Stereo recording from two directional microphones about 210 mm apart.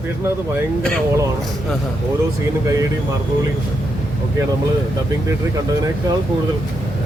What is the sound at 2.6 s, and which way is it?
Speech, 15° right (ahead or behind).